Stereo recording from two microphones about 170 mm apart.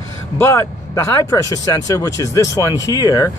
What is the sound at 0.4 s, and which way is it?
Speech, 15° left (ahead or behind).